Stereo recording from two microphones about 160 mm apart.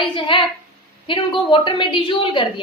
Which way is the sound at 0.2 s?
30° left (ahead or behind).